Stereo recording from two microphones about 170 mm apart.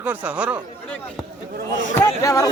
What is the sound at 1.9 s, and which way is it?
Speech, 20° left (ahead or behind).